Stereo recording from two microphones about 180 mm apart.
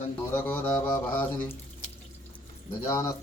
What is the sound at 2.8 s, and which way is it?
Speech, 20° left (ahead or behind).